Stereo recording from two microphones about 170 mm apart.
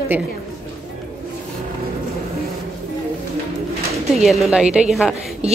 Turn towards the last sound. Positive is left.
turn(degrees=-5)  # may be behind; listen again after turning